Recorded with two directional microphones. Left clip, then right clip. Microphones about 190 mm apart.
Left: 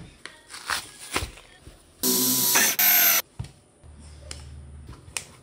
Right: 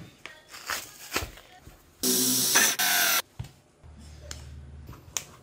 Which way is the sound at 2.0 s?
Centre (ahead or behind).